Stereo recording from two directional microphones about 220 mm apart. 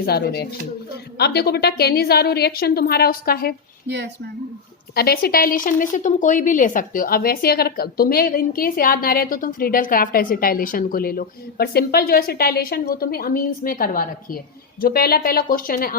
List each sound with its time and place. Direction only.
0.0 s a woman's voice: 45° left (ahead or behind)
3.8 s speech: 50° right (ahead or behind)
4.9 s a woman's voice: 45° left (ahead or behind)